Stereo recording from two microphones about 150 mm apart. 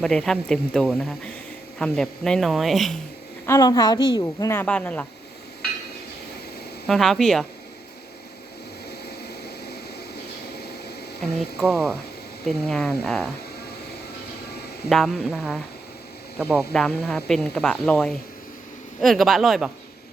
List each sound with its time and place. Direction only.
0.0 s speech: 5° left (ahead or behind)
3.4 s a woman's voice: 20° left (ahead or behind)
6.8 s speech: centre (ahead or behind)
8.9 s vehicle: 90° left
10.6 s a sound: 90° left
11.5 s speech: centre (ahead or behind)
14.8 s speech: centre (ahead or behind)